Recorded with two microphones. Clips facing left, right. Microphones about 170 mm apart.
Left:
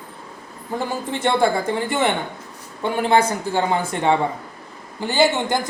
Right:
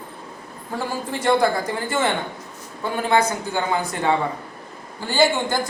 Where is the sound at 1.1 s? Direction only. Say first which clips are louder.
Even; 25° left (ahead or behind).